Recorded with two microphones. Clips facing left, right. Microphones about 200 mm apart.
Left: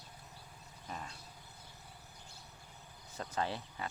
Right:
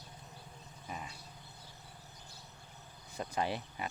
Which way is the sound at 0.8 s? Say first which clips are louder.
Right 1 dB; 10° right (ahead or behind).